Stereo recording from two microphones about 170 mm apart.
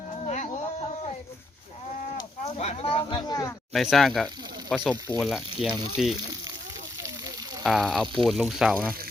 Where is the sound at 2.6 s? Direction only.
35° left (ahead or behind).